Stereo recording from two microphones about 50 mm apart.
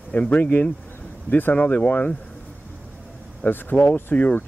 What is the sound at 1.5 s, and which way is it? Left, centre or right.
Speech, left.